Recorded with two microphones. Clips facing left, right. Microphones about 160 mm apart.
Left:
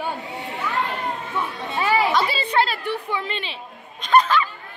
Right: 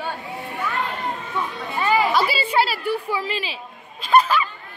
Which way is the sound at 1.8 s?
Centre (ahead or behind).